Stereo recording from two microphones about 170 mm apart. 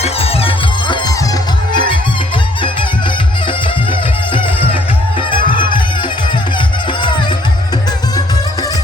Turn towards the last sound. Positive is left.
turn(degrees=25)  # may be behind; listen again after turning